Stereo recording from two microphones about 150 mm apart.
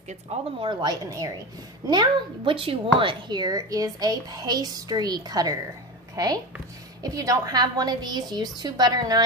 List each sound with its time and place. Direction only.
0.3 s a woman's voice: 35° right (ahead or behind)